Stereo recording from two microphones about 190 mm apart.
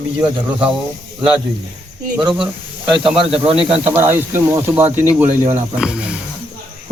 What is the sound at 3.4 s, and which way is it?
Speech, 5° right (ahead or behind).